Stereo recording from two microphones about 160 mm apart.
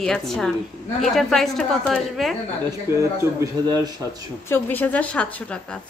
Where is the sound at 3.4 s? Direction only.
25° right (ahead or behind).